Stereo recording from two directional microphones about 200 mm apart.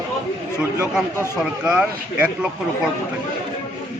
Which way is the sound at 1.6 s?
5° right (ahead or behind).